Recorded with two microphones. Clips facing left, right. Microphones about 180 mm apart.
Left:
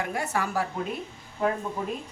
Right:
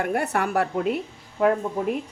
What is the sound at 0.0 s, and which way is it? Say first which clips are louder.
Speech: right 5 dB; 60° right (ahead or behind).